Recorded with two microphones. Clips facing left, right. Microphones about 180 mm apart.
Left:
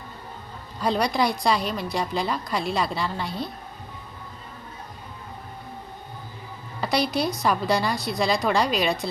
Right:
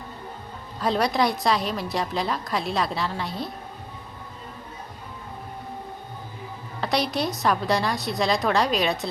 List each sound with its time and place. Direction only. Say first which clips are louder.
0.8 s a woman's voice: even; centre (ahead or behind)
6.8 s a woman's voice: left 1 dB; centre (ahead or behind)